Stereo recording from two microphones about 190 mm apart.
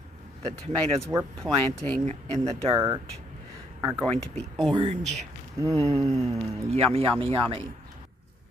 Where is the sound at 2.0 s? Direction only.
35° right (ahead or behind).